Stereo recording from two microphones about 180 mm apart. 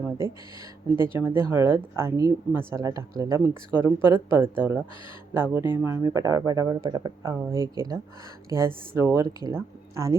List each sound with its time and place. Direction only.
0.9 s speech: 15° right (ahead or behind)